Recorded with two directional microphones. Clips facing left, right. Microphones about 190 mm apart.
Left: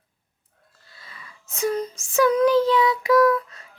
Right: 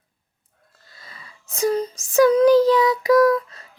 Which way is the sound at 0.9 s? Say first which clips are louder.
Even; 40° right (ahead or behind).